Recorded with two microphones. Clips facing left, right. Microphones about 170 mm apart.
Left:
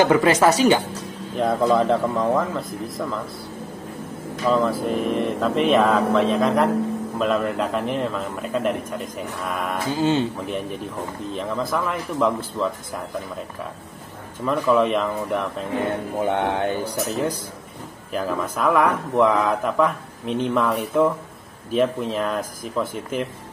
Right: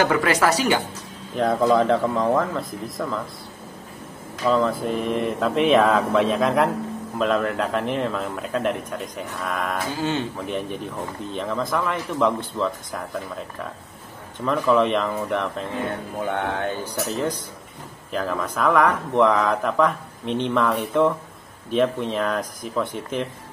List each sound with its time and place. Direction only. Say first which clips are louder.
0.0 s speech: left 4 dB; 20° left (ahead or behind)
1.3 s speech: even; centre (ahead or behind)
4.5 s speech: even; centre (ahead or behind)
9.9 s speech: left 7 dB; 20° left (ahead or behind)
10.4 s speech: even; centre (ahead or behind)
14.4 s speech: even; centre (ahead or behind)
16.3 s a man's voice: left 3 dB; 20° left (ahead or behind); by 23.2 s centre (ahead or behind)